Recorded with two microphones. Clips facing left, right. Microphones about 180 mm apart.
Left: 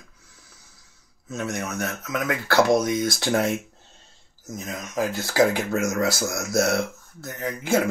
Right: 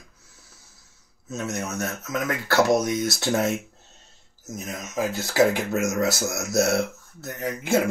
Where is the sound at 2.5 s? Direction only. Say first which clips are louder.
Left 1 dB; 25° right (ahead or behind).